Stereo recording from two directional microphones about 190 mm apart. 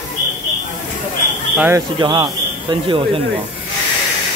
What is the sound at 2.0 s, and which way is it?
Speech, 25° right (ahead or behind).